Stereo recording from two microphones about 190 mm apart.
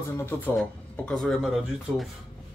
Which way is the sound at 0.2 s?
10° left (ahead or behind).